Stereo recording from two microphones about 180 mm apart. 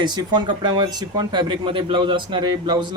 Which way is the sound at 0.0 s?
25° right (ahead or behind).